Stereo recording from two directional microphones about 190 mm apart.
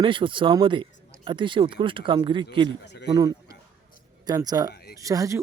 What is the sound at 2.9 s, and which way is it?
Speech, 65° left (ahead or behind).